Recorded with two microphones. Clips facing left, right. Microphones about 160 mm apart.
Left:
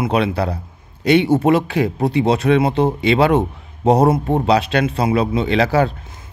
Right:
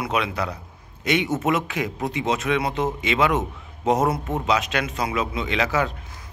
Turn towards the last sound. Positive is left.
turn(degrees=30)  # may be behind; listen again after turning